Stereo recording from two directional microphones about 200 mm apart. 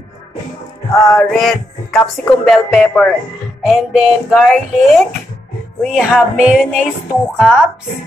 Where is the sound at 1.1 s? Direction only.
Centre (ahead or behind).